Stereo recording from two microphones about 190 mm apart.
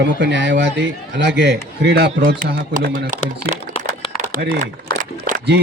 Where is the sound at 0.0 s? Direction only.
65° right (ahead or behind).